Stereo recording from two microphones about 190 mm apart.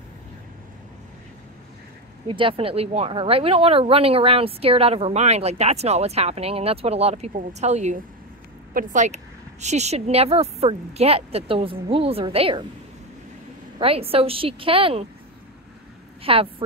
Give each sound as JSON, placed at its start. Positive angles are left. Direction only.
{"t": 2.2, "sound": "speech", "side_deg": -25}
{"t": 13.7, "sound": "a woman's voice", "side_deg": -30}
{"t": 16.2, "sound": "a woman's voice", "side_deg": -30}